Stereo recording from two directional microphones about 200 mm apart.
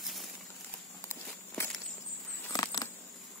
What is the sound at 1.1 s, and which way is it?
Walk, 10° left (ahead or behind).